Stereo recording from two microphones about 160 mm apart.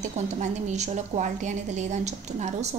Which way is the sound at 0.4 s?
45° right (ahead or behind).